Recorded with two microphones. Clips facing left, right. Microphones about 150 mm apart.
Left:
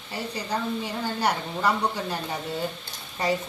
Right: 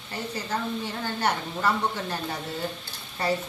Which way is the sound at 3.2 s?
15° left (ahead or behind).